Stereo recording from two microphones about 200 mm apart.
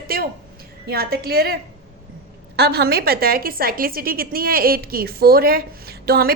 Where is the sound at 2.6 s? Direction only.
55° right (ahead or behind).